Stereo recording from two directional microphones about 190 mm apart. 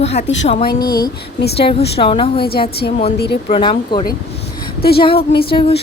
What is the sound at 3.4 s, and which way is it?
Speech, 30° left (ahead or behind).